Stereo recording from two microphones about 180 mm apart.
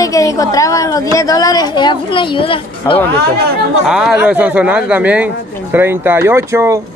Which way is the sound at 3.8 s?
5° right (ahead or behind).